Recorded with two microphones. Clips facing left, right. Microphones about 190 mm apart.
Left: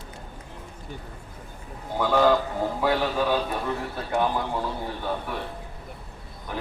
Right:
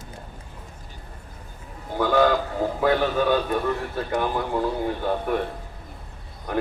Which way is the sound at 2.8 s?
50° right (ahead or behind).